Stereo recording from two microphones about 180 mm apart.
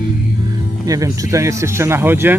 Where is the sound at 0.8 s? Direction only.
20° right (ahead or behind).